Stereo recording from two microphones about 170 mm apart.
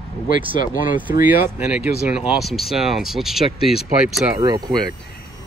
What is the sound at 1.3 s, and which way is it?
Speech, 5° right (ahead or behind).